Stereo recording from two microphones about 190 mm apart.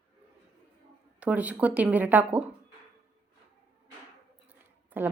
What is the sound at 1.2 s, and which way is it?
A woman's voice, 10° right (ahead or behind).